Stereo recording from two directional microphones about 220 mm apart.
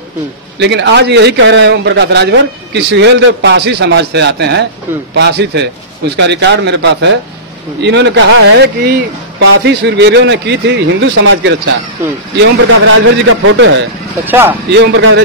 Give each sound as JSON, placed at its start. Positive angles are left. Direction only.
{"t": 0.6, "sound": "a man's voice", "side_deg": -50}
{"t": 12.8, "sound": "a man's voice", "side_deg": -65}
{"t": 14.2, "sound": "speech", "side_deg": -10}
{"t": 14.8, "sound": "a man's voice", "side_deg": -55}